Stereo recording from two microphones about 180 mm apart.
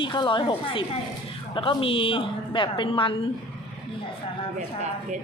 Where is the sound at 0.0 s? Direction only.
25° left (ahead or behind).